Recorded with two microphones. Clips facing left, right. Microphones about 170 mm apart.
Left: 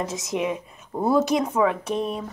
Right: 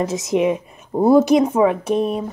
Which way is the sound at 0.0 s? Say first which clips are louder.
Right 8 dB; 10° right (ahead or behind).